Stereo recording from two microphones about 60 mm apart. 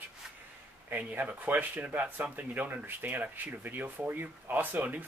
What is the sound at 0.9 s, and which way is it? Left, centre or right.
Speech, right.